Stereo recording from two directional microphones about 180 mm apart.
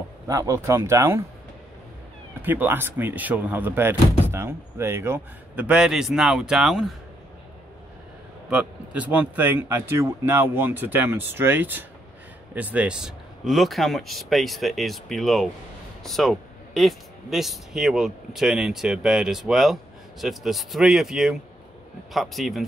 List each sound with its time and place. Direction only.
0.3 s speech: 15° right (ahead or behind)
2.4 s a man's voice: 10° right (ahead or behind)
8.5 s a man's voice: 5° right (ahead or behind)